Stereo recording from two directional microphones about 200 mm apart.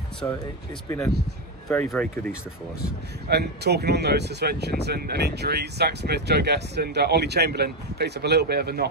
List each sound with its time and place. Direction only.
0.2 s speech: 15° left (ahead or behind)
3.3 s speech: 55° right (ahead or behind)